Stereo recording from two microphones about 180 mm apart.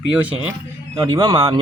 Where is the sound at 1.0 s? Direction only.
20° right (ahead or behind).